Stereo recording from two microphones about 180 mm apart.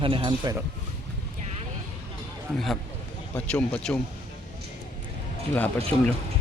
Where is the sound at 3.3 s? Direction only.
5° left (ahead or behind).